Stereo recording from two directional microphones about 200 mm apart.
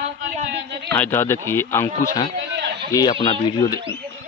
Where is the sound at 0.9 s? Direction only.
10° left (ahead or behind).